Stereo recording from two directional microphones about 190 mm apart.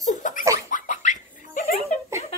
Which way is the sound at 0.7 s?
45° left (ahead or behind).